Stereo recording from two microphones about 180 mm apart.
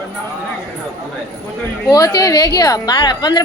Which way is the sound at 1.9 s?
20° left (ahead or behind).